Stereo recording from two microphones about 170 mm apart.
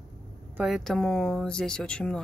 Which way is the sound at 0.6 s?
Centre (ahead or behind).